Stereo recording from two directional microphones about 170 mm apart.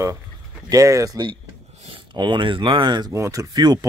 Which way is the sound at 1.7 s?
35° right (ahead or behind).